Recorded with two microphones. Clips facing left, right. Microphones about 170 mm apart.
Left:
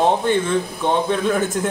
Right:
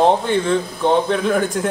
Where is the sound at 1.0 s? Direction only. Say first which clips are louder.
Right 1 dB; centre (ahead or behind).